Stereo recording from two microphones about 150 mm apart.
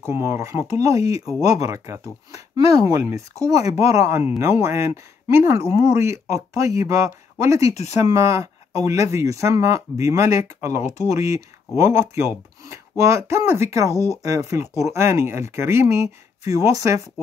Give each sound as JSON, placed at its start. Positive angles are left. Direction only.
{"t": 0.0, "sound": "speech", "side_deg": -15}